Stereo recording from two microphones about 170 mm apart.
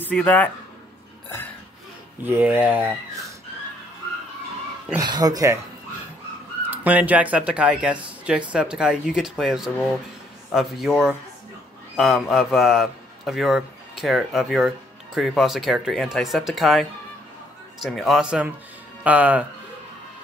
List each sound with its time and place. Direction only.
0.0 s speech: 10° left (ahead or behind)
2.2 s speech: 10° right (ahead or behind)
4.9 s speech: 25° right (ahead or behind)
6.7 s a man's voice: 10° right (ahead or behind)
17.8 s speech: centre (ahead or behind)